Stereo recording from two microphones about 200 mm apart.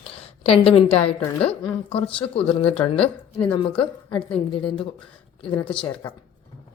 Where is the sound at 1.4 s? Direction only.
30° left (ahead or behind).